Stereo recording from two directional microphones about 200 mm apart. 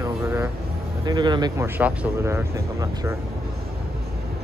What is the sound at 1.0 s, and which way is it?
Speech, 20° right (ahead or behind).